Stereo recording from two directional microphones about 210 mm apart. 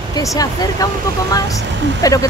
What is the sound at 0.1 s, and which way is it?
Speech, 15° left (ahead or behind).